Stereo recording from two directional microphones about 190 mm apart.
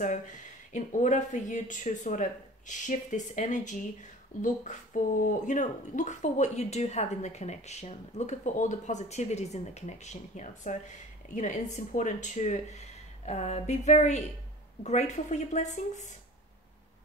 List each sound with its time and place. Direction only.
0.0 s speech: 40° left (ahead or behind)